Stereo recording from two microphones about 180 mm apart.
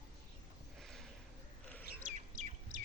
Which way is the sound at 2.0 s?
45° right (ahead or behind).